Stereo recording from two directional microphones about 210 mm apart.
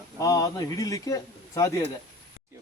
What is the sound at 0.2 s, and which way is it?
A man's voice, 15° left (ahead or behind).